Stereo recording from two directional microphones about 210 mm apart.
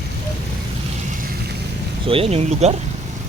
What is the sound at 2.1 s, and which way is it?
Speech, 30° right (ahead or behind).